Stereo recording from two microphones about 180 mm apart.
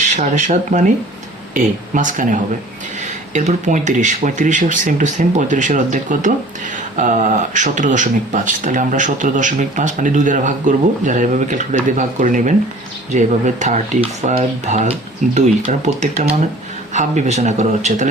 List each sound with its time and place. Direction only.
0.0 s speech: 45° right (ahead or behind)
1.9 s speech: 45° right (ahead or behind)